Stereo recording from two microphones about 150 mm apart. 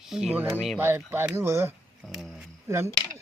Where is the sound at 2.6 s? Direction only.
15° right (ahead or behind).